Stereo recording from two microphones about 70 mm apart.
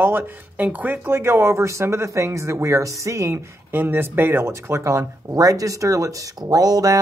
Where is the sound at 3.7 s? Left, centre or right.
Right.